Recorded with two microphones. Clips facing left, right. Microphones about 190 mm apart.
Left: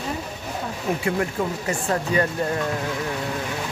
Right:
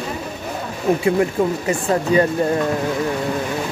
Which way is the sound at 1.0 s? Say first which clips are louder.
Right 6 dB; 20° right (ahead or behind).